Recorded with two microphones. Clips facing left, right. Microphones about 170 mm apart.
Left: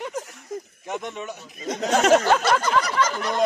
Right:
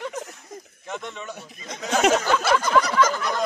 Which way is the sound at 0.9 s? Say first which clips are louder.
Left 3 dB; 15° left (ahead or behind).